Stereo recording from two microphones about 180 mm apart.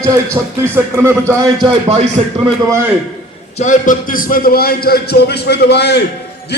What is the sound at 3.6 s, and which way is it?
A man's voice, 45° left (ahead or behind).